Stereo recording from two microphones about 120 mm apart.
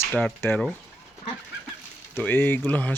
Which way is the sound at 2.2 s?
15° left (ahead or behind).